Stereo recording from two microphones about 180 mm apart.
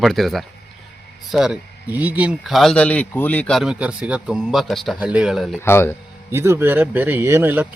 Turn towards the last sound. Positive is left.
turn(degrees=-10)  # may be behind; listen again after turning